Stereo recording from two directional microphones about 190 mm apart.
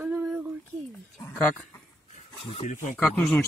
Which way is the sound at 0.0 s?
10° right (ahead or behind).